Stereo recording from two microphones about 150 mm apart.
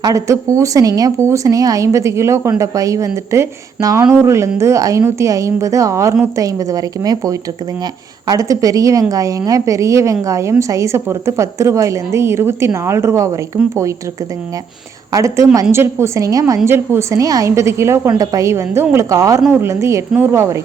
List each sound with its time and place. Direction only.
0.0 s speech: 20° right (ahead or behind)
15.1 s a woman's voice: 20° right (ahead or behind)